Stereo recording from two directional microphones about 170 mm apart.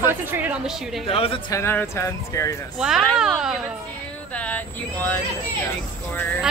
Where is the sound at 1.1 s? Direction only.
35° left (ahead or behind).